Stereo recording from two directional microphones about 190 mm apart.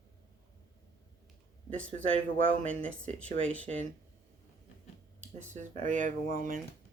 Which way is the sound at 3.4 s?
5° left (ahead or behind).